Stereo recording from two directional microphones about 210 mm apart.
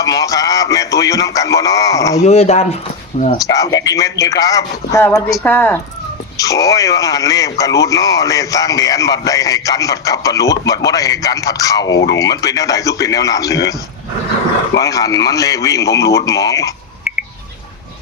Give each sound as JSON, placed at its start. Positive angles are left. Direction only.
{"t": 0.0, "sound": "speech", "side_deg": 15}
{"t": 2.2, "sound": "speech", "side_deg": 30}
{"t": 3.4, "sound": "a man's voice", "side_deg": 15}
{"t": 14.8, "sound": "a man's voice", "side_deg": 15}